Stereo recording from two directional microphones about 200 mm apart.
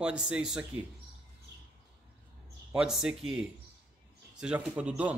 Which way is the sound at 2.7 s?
5° right (ahead or behind).